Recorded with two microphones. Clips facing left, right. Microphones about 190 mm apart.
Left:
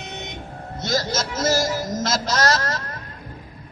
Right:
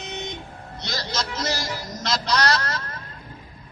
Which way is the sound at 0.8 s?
45° left (ahead or behind).